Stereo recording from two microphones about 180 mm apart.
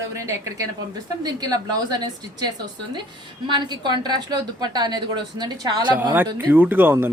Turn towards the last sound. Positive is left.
turn(degrees=-10)  # may be behind; listen again after turning